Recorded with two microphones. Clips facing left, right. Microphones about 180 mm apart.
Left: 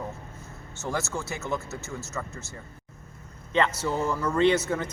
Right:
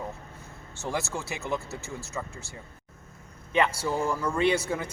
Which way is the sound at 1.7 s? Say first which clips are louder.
Left 1 dB; 35° right (ahead or behind).